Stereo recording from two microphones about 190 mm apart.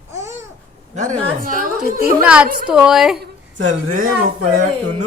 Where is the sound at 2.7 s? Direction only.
5° right (ahead or behind).